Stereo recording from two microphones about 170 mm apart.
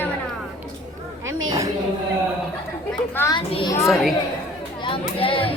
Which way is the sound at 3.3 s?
30° left (ahead or behind).